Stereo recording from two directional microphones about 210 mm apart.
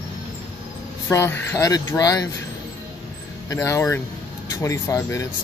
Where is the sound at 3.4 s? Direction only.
15° left (ahead or behind).